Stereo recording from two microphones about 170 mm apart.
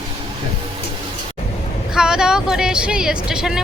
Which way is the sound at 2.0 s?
5° right (ahead or behind).